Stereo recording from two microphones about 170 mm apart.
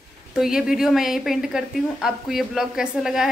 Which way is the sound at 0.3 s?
5° right (ahead or behind).